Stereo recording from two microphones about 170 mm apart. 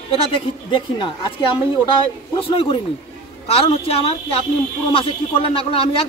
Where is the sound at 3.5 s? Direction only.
35° left (ahead or behind).